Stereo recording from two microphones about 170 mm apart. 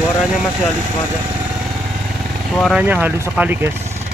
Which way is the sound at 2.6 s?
5° right (ahead or behind).